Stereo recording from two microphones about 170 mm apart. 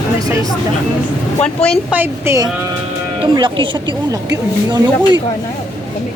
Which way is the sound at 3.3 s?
30° right (ahead or behind).